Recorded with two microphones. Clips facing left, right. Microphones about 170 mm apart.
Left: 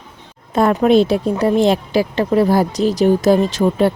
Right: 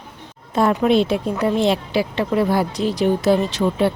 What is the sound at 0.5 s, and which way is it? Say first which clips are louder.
Speech: left 3 dB; 55° left (ahead or behind).